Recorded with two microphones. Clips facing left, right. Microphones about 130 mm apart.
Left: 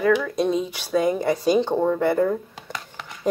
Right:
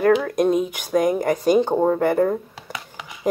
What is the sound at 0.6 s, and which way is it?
Speech, 15° right (ahead or behind).